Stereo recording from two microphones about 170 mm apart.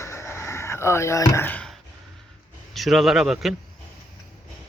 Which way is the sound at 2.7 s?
Centre (ahead or behind).